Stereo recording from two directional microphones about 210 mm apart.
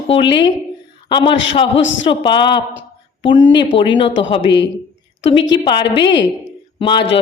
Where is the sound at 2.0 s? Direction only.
25° left (ahead or behind).